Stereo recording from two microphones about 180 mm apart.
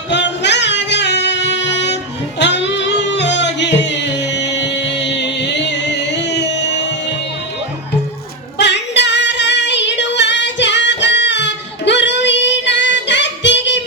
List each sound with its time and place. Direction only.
0.1 s music: 75° left (ahead or behind)
8.5 s female singing: 75° left (ahead or behind)